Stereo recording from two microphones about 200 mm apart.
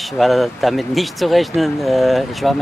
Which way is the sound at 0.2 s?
Centre (ahead or behind).